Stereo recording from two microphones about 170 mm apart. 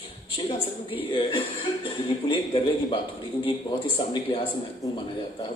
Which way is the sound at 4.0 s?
30° left (ahead or behind).